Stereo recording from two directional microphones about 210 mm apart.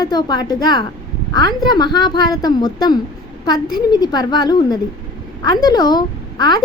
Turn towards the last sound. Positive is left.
turn(degrees=20)  # may be behind; listen again after turning